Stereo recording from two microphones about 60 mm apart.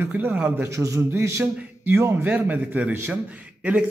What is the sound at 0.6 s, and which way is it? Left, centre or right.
Speech, right.